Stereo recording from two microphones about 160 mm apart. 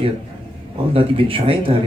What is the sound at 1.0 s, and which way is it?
Speech, 35° right (ahead or behind).